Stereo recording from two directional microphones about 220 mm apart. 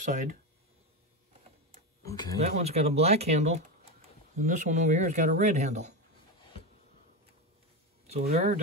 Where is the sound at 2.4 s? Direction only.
30° right (ahead or behind).